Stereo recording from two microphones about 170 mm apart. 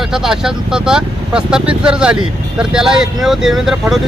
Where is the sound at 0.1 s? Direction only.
5° right (ahead or behind).